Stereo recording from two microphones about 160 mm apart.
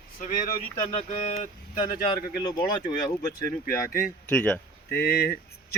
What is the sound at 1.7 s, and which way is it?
Speech, 30° left (ahead or behind).